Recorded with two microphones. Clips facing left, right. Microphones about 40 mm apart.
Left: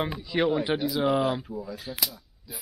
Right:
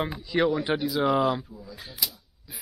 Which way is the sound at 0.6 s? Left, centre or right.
Centre.